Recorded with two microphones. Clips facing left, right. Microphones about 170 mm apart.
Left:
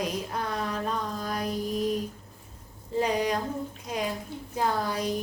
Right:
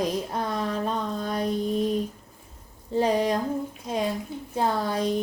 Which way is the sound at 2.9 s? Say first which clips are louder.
Right 3 dB; 30° right (ahead or behind).